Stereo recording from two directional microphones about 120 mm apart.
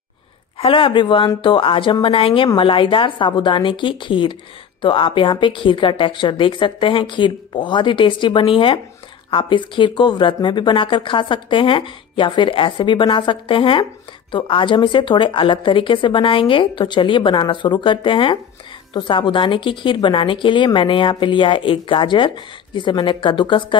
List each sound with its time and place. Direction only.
0.6 s speech: 45° left (ahead or behind)